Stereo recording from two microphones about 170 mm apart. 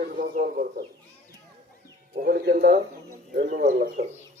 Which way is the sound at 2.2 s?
65° right (ahead or behind).